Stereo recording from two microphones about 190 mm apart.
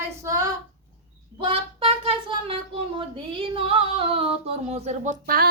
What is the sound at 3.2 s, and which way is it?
Music, 30° right (ahead or behind).